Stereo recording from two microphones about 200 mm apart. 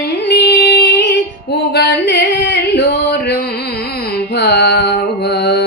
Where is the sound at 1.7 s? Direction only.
60° left (ahead or behind).